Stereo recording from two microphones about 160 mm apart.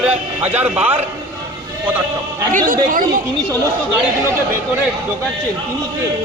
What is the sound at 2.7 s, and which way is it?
Speech, 60° right (ahead or behind).